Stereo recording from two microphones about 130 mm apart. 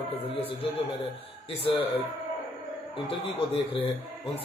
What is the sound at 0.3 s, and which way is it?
A man's voice, 45° left (ahead or behind).